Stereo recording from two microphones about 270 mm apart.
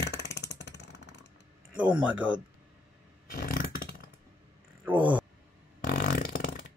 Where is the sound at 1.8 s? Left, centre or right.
Centre.